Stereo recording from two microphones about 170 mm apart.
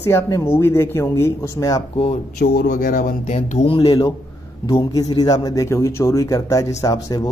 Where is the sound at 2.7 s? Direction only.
55° left (ahead or behind).